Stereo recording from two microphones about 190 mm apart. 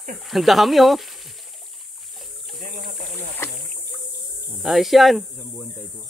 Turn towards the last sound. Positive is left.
turn(degrees=0)  # may be behind; listen again after turning